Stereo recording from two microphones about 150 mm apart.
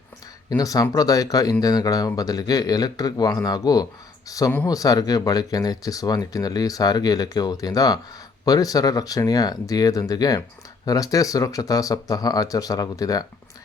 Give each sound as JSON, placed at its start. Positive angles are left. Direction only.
{"t": 0.5, "sound": "speech", "side_deg": 25}